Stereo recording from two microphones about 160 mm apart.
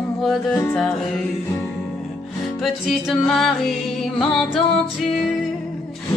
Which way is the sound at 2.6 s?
Centre (ahead or behind).